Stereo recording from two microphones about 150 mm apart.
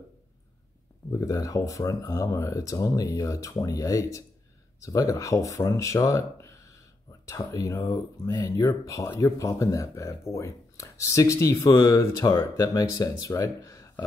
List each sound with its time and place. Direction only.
1.1 s speech: 20° left (ahead or behind)